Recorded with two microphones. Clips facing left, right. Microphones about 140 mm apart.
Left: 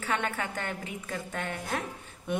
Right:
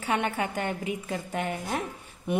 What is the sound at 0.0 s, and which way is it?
A woman's voice, 15° right (ahead or behind).